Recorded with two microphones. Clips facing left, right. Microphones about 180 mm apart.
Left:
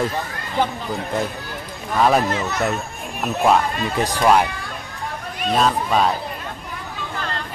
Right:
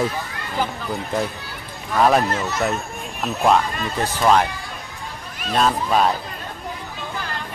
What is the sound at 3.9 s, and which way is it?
Speech, 15° left (ahead or behind).